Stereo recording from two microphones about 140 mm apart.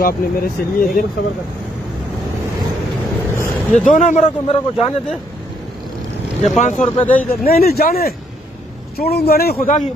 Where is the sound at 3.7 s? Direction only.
60° left (ahead or behind).